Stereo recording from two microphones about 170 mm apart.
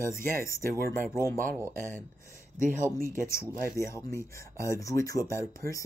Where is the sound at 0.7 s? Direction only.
60° right (ahead or behind).